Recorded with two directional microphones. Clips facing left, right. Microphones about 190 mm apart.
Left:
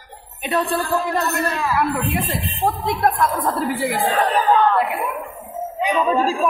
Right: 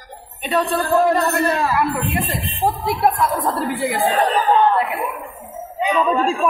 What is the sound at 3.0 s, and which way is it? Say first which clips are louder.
A woman's voice: right 1 dB; 5° right (ahead or behind).